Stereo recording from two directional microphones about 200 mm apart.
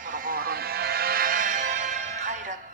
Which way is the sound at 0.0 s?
40° right (ahead or behind).